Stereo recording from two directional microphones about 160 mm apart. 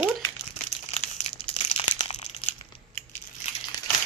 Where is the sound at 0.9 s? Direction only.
45° left (ahead or behind).